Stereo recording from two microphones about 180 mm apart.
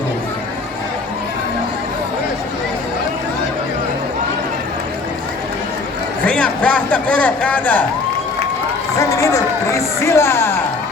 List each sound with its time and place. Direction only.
6.2 s a man's voice: 5° left (ahead or behind)
9.0 s speech: 20° left (ahead or behind)